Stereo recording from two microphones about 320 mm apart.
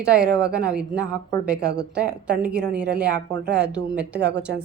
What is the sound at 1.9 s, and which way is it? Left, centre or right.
Speech, centre.